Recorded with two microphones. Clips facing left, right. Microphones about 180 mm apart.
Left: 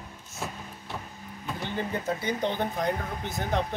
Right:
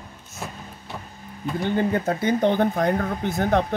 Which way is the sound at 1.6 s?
55° right (ahead or behind).